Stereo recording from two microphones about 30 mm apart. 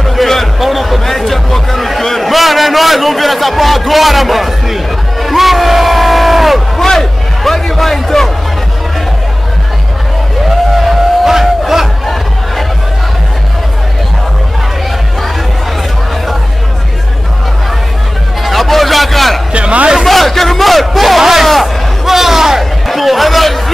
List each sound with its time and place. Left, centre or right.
0.1 s music: centre
0.6 s a sound: centre
6.8 s a sound: centre
10.7 s music: centre
18.4 s music: centre
19.5 s speech: right
20.1 s a man's voice: centre
22.0 s music: centre
22.8 s a sound: centre